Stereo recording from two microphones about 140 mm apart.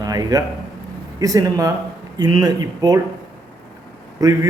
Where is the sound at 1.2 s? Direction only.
25° right (ahead or behind).